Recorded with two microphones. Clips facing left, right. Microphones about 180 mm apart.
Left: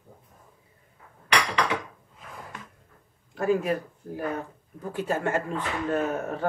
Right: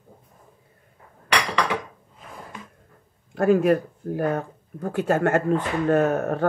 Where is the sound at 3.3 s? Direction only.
60° right (ahead or behind).